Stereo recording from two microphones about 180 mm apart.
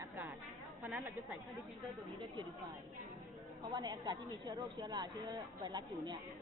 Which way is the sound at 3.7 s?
25° right (ahead or behind).